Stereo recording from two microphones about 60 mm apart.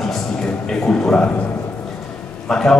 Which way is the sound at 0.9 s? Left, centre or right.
Centre.